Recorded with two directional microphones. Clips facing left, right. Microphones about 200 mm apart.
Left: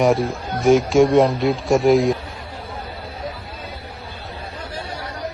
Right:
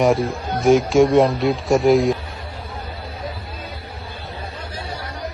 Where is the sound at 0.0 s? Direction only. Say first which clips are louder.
Even; centre (ahead or behind).